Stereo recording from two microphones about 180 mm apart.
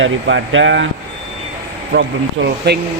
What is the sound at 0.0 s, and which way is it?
Speech, 90° right.